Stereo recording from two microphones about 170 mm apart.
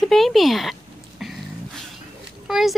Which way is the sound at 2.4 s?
Centre (ahead or behind).